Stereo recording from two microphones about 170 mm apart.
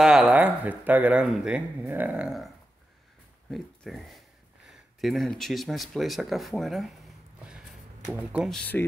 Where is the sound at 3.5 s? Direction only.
Centre (ahead or behind).